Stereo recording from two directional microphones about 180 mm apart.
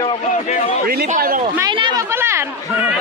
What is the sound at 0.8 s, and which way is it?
Speech, 60° right (ahead or behind).